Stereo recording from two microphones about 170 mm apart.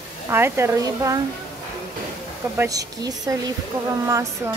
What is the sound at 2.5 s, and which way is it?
Speech, 20° right (ahead or behind).